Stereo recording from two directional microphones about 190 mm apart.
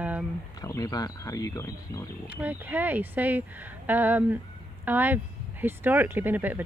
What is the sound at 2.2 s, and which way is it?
Speech, 10° right (ahead or behind).